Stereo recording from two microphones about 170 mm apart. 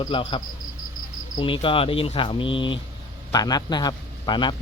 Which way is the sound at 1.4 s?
30° left (ahead or behind).